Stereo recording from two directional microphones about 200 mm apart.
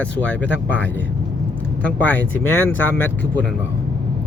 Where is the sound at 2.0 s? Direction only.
10° left (ahead or behind).